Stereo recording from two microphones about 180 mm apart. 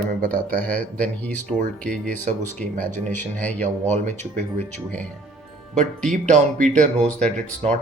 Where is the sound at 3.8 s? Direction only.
40° right (ahead or behind).